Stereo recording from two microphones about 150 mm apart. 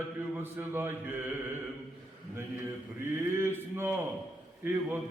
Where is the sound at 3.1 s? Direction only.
15° right (ahead or behind).